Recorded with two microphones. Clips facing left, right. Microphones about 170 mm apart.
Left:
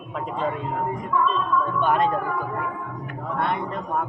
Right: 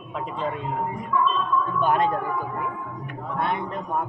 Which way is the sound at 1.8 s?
Centre (ahead or behind).